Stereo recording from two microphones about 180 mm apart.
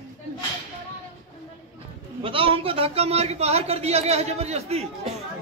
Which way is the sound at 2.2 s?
30° right (ahead or behind).